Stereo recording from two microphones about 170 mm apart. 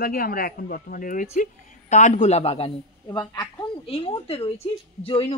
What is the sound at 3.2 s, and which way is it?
Speech, 20° left (ahead or behind).